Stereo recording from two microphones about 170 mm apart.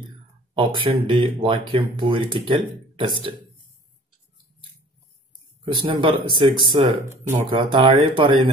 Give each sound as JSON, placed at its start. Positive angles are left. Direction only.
{"t": 0.6, "sound": "speech", "side_deg": -30}
{"t": 5.9, "sound": "speech", "side_deg": -30}